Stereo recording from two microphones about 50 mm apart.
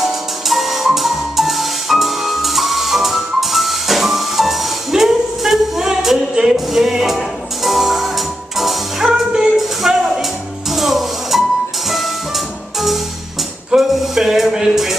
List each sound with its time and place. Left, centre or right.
0.0 s music: centre
13.7 s music: centre